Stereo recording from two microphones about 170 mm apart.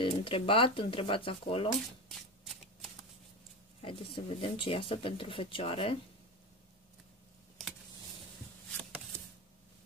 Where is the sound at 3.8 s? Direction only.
35° left (ahead or behind).